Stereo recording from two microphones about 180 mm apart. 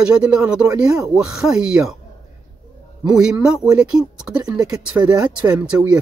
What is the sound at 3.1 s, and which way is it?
Speech, 5° right (ahead or behind).